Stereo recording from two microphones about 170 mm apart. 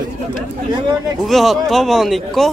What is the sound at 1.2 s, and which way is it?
Speech, centre (ahead or behind).